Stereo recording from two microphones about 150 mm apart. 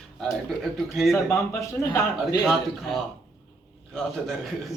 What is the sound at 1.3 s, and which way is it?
A man's voice, 20° left (ahead or behind).